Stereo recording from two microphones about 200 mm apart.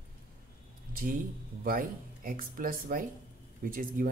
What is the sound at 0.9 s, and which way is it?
Speech, 45° right (ahead or behind).